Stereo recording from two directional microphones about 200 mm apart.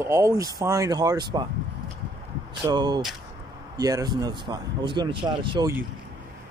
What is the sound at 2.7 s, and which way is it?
Speech, 20° right (ahead or behind).